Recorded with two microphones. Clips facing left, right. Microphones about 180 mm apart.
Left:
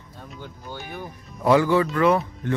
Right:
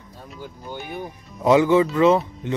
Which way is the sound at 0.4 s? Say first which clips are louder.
Right 3 dB; 15° right (ahead or behind).